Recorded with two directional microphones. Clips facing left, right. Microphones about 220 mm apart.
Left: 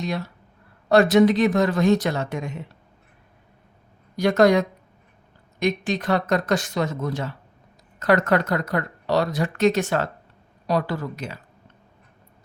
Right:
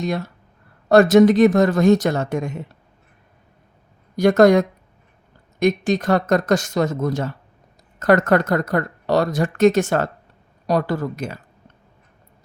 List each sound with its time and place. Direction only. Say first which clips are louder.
0.0 s speech: right 4 dB; 45° right (ahead or behind)
4.2 s speech: right 4 dB; 45° right (ahead or behind)